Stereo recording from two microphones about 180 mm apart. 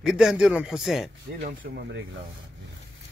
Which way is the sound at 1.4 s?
75° right (ahead or behind).